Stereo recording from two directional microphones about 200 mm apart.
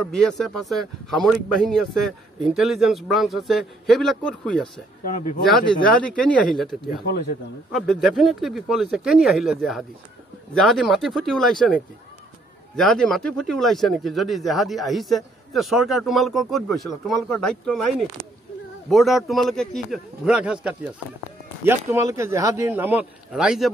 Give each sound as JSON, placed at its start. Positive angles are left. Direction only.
{"t": 0.0, "sound": "speech", "side_deg": 0}
{"t": 5.0, "sound": "speech", "side_deg": 40}
{"t": 5.4, "sound": "speech", "side_deg": 0}
{"t": 7.1, "sound": "speech", "side_deg": 50}
{"t": 7.7, "sound": "speech", "side_deg": 0}